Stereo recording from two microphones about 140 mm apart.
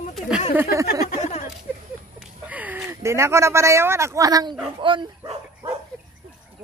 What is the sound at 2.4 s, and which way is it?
Speech, 10° right (ahead or behind).